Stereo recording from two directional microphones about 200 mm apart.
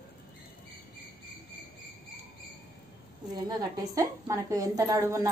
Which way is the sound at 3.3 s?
20° right (ahead or behind).